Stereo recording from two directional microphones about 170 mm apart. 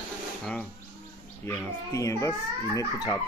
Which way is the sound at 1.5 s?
15° left (ahead or behind).